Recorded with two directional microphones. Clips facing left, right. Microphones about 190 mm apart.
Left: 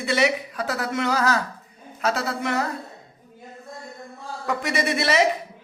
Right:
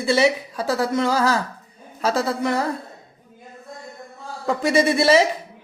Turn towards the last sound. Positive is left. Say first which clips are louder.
# right 5 dB
turn(degrees=-30)  # may be behind; listen again after turning